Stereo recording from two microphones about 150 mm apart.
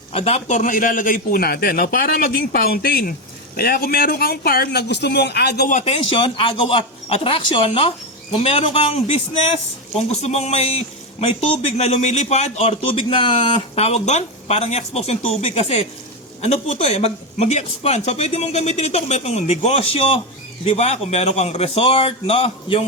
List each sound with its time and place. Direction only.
0.1 s a man's voice: 40° left (ahead or behind); by 5.7 s 90° left
5.7 s a man's voice: 45° left (ahead or behind)